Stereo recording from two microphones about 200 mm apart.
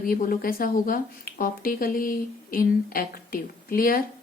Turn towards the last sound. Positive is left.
turn(degrees=45)  # may be behind; listen again after turning